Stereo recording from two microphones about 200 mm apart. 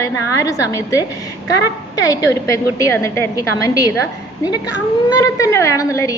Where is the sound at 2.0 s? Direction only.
15° left (ahead or behind).